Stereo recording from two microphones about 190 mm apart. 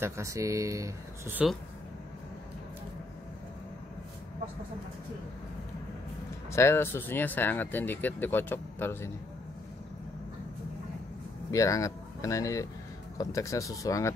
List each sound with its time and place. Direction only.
0.0 s speech: 15° right (ahead or behind)
6.5 s speech: 15° left (ahead or behind)
11.5 s speech: 15° left (ahead or behind)